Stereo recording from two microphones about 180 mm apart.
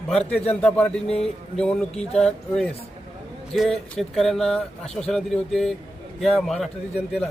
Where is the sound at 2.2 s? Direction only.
5° left (ahead or behind).